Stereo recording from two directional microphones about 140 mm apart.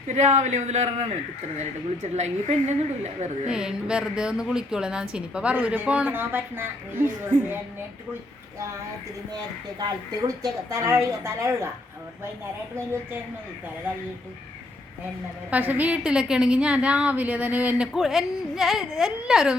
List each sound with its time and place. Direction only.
0.1 s a man's voice: 55° right (ahead or behind)
2.1 s a woman's voice: 55° right (ahead or behind)
3.5 s a woman's voice: 5° right (ahead or behind)
9.3 s a woman's voice: 30° right (ahead or behind)
15.4 s a woman's voice: 10° right (ahead or behind)